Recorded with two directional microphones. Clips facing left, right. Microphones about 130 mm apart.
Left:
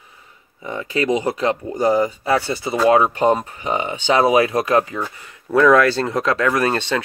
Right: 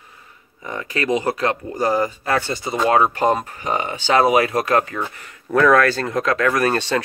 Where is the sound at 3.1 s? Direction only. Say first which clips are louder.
Left 2 dB; 20° left (ahead or behind).